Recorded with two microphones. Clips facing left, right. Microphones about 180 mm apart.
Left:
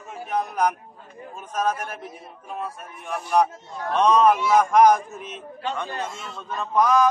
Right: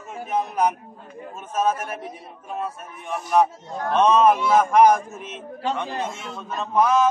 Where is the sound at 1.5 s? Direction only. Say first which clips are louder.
Right 2 dB; 5° right (ahead or behind).